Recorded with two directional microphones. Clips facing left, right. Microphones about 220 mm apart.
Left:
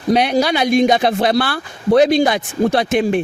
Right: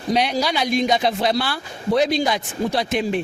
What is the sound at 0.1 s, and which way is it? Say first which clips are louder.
Speech: left 6 dB; 55° left (ahead or behind).